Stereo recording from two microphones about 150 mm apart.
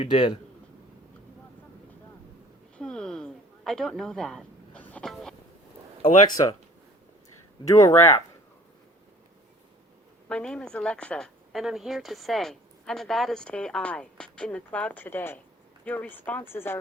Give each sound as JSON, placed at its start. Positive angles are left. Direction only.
{"t": 0.0, "sound": "speech", "side_deg": 30}
{"t": 2.7, "sound": "a sound", "side_deg": 5}
{"t": 6.0, "sound": "speech", "side_deg": 35}
{"t": 7.6, "sound": "speech", "side_deg": 25}
{"t": 10.2, "sound": "speech", "side_deg": 5}